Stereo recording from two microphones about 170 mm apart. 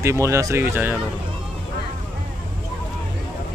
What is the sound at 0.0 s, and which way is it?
Speech, 15° right (ahead or behind).